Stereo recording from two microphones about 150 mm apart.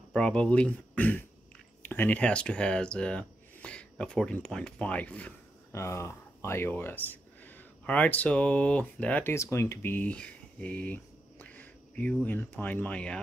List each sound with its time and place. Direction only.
0.1 s speech: 5° left (ahead or behind)